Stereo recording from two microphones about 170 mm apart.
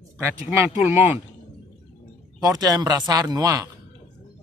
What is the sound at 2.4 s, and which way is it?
A man's voice, 20° right (ahead or behind).